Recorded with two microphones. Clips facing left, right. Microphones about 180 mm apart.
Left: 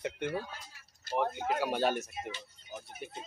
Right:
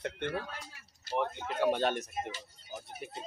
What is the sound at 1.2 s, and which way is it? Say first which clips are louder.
Speech: left 4 dB; 40° left (ahead or behind).